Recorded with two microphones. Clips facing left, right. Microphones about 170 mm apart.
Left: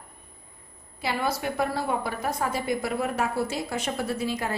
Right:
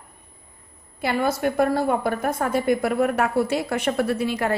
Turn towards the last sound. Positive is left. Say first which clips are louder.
# right 5 dB
turn(degrees=-65)  # may be behind; listen again after turning